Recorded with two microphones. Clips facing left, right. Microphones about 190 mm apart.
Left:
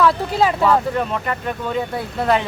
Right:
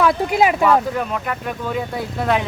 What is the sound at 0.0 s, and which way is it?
Speech, 15° right (ahead or behind).